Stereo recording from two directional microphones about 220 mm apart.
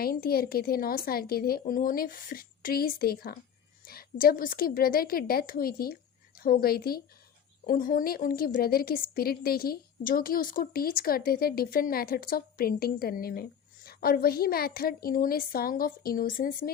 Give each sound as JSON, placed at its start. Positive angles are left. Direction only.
{"t": 0.0, "sound": "a woman's voice", "side_deg": 45}